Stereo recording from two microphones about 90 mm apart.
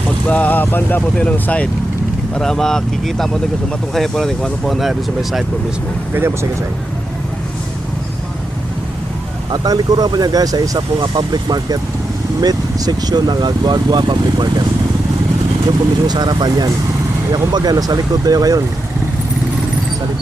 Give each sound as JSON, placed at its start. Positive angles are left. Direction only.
{"t": 0.3, "sound": "speech", "side_deg": 15}
{"t": 6.1, "sound": "speech", "side_deg": -30}
{"t": 9.5, "sound": "speech", "side_deg": -45}
{"t": 11.0, "sound": "speech", "side_deg": -55}
{"t": 16.0, "sound": "speech", "side_deg": -50}